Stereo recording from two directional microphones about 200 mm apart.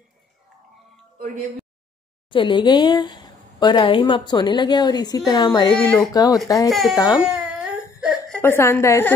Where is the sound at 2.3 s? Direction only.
25° left (ahead or behind).